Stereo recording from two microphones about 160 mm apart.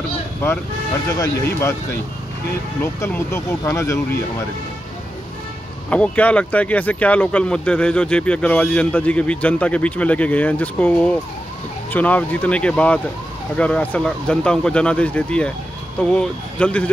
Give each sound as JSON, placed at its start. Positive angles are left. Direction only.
{"t": 0.4, "sound": "speech", "side_deg": 15}
{"t": 2.8, "sound": "speech", "side_deg": 15}
{"t": 5.9, "sound": "speech", "side_deg": 10}